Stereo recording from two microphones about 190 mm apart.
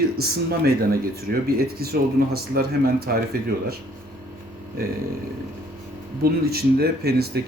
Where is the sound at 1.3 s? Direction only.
50° right (ahead or behind).